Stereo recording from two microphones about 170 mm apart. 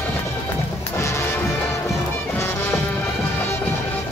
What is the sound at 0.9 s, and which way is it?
Music, 15° left (ahead or behind).